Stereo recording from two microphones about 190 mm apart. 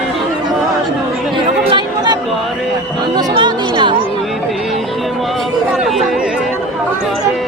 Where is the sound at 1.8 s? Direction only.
25° right (ahead or behind).